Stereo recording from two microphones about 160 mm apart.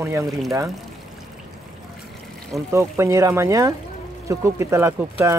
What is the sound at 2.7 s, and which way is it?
Speech, 15° right (ahead or behind).